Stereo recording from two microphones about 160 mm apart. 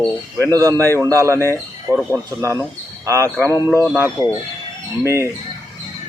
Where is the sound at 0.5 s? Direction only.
20° right (ahead or behind).